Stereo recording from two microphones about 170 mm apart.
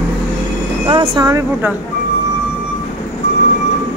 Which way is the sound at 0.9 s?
25° right (ahead or behind).